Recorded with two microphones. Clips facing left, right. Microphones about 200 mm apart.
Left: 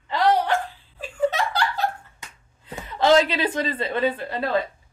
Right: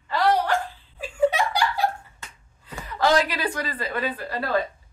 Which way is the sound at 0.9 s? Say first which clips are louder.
Right 2 dB; 10° right (ahead or behind).